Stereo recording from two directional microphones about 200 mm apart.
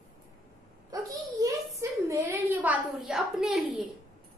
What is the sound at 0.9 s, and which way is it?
A child's voice, 15° right (ahead or behind).